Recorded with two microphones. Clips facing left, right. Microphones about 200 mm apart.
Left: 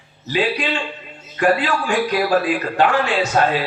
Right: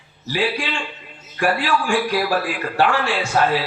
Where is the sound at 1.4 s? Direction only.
20° left (ahead or behind).